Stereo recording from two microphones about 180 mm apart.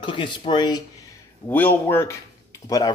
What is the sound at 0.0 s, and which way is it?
Speech, 25° left (ahead or behind).